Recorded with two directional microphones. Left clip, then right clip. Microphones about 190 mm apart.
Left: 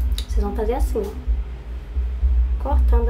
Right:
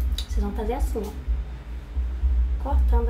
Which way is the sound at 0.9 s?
20° left (ahead or behind).